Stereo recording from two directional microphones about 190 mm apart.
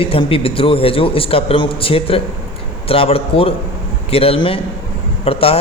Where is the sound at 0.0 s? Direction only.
30° left (ahead or behind).